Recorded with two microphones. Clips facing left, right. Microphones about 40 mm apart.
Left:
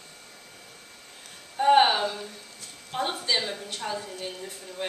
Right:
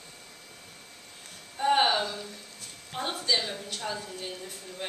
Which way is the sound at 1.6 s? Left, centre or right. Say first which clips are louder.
Left 5 dB; centre.